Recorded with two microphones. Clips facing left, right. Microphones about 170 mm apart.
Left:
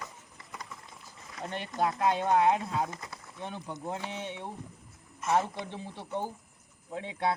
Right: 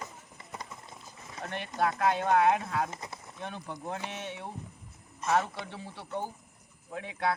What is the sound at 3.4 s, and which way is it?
Speech, 15° left (ahead or behind).